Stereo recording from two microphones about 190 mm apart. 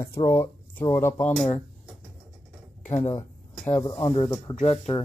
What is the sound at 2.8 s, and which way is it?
Speech, 15° left (ahead or behind).